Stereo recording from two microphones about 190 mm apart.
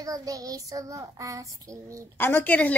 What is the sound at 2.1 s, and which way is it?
Speech, 10° left (ahead or behind).